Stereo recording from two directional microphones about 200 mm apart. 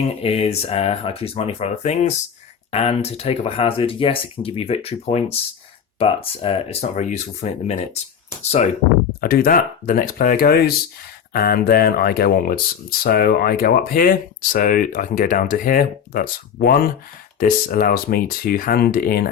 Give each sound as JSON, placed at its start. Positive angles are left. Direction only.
{"t": 0.2, "sound": "speech", "side_deg": 30}
{"t": 9.2, "sound": "speech", "side_deg": 50}